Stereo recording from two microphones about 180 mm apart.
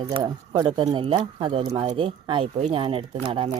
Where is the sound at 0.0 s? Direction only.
25° right (ahead or behind).